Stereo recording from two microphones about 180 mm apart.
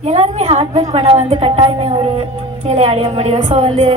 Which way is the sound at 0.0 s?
35° right (ahead or behind).